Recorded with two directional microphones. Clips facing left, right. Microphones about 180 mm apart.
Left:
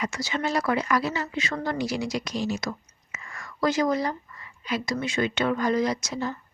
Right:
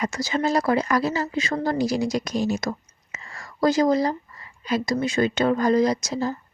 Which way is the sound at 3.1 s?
30° right (ahead or behind).